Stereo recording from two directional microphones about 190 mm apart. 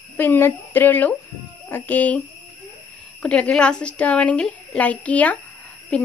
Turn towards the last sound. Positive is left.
turn(degrees=5)  # may be behind; listen again after turning